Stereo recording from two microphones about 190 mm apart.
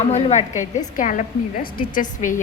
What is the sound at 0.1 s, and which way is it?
A woman's voice, 35° left (ahead or behind).